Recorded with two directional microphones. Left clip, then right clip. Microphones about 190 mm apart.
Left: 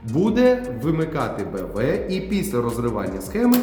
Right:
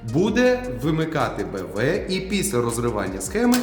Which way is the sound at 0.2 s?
20° right (ahead or behind).